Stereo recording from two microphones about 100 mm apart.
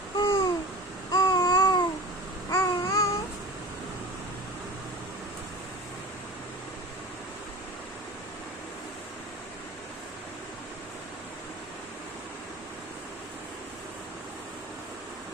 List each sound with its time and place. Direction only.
0.2 s babbling: 55° left (ahead or behind)
1.1 s babbling: 40° left (ahead or behind)
2.5 s babbling: 30° left (ahead or behind)